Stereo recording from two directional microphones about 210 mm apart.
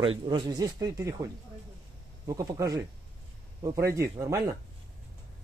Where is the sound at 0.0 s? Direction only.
25° right (ahead or behind).